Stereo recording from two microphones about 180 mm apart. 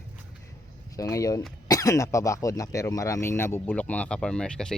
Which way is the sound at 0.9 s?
20° left (ahead or behind).